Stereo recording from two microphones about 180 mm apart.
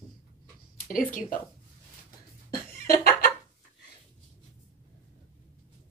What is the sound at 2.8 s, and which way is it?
Chicken, 55° left (ahead or behind).